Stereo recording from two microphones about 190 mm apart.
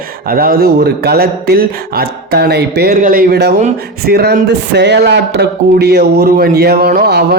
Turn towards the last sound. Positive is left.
turn(degrees=-55)  # may be behind; listen again after turning